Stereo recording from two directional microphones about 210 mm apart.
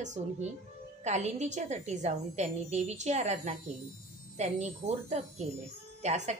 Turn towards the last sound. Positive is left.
turn(degrees=-35)  # may be behind; listen again after turning